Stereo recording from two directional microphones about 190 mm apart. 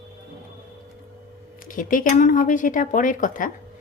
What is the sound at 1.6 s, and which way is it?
Speech, 45° left (ahead or behind).